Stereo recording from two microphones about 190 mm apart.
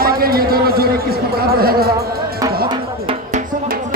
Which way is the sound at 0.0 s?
50° right (ahead or behind).